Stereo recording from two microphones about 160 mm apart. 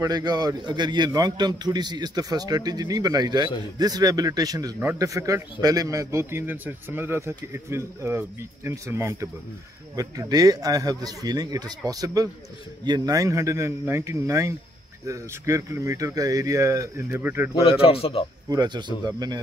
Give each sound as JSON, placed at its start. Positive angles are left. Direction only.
{"t": 0.0, "sound": "a man's voice", "side_deg": -25}
{"t": 17.6, "sound": "speech", "side_deg": 35}
{"t": 18.5, "sound": "a man's voice", "side_deg": -25}